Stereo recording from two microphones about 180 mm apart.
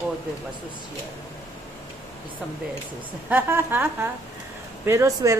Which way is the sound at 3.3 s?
10° right (ahead or behind).